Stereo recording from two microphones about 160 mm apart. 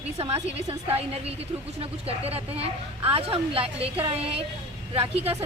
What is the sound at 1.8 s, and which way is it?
A woman's voice, 40° right (ahead or behind).